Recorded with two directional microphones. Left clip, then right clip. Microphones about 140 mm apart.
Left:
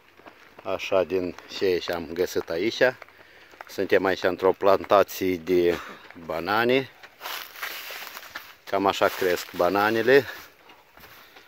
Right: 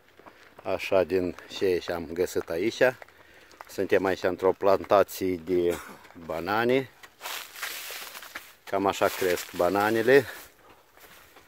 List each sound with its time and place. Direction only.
0.7 s speech: 35° right (ahead or behind)
1.7 s speech: 10° right (ahead or behind)
5.2 s speech: 5° left (ahead or behind)
6.2 s speech: 5° right (ahead or behind)
7.2 s walk: 15° left (ahead or behind)
8.6 s speech: 5° right (ahead or behind)